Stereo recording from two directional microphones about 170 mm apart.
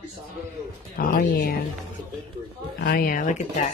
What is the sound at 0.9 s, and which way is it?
Speech, 55° left (ahead or behind).